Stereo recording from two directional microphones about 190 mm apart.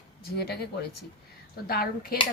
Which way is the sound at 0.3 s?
55° left (ahead or behind).